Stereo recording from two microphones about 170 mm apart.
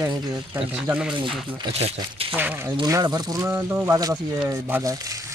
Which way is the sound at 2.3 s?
10° right (ahead or behind).